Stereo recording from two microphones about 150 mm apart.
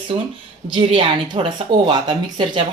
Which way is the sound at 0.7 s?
35° right (ahead or behind).